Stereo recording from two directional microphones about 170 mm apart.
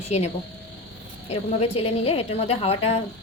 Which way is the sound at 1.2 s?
40° left (ahead or behind).